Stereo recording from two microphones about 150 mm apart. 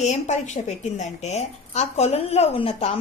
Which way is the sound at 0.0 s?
50° left (ahead or behind).